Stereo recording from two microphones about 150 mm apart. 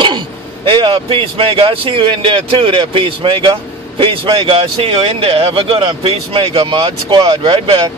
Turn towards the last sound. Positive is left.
turn(degrees=-25)  # may be behind; listen again after turning